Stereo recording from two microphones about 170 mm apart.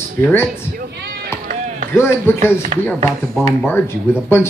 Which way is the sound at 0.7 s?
70° right (ahead or behind).